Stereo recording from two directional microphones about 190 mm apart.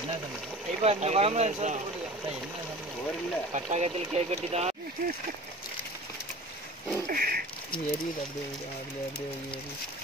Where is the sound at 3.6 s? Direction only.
35° right (ahead or behind).